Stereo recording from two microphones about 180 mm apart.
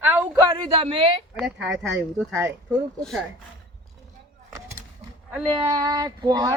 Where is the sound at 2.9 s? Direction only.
5° left (ahead or behind).